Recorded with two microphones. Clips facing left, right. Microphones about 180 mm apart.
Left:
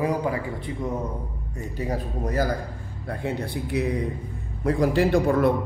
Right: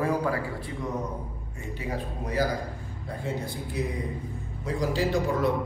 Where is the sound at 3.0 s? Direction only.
65° left (ahead or behind).